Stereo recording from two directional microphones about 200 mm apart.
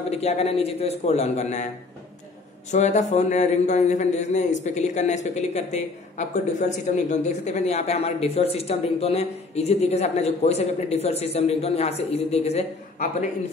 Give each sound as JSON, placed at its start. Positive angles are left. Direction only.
{"t": 0.1, "sound": "a man's voice", "side_deg": 30}
{"t": 2.7, "sound": "a man's voice", "side_deg": 35}